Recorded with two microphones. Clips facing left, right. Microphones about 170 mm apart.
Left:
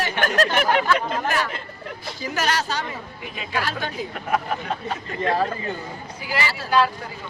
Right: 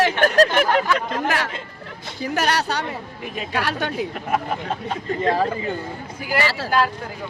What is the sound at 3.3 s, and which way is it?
Speech, 45° right (ahead or behind).